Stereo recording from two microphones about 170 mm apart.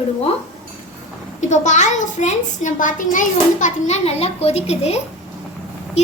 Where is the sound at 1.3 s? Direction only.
45° left (ahead or behind).